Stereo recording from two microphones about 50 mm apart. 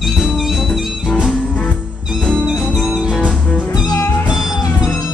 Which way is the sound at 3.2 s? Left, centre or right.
Centre.